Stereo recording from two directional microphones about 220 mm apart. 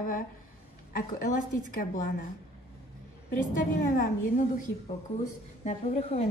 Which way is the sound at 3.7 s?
40° left (ahead or behind).